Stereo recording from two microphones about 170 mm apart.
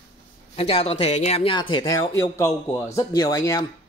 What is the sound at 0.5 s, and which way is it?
Speech, 35° left (ahead or behind).